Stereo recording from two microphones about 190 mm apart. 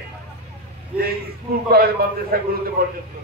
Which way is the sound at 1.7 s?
55° right (ahead or behind).